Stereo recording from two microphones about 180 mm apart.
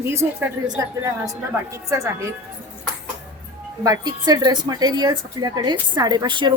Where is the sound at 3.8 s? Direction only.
20° right (ahead or behind).